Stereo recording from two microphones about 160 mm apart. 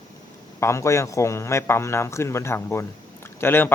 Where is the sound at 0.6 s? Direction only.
20° left (ahead or behind).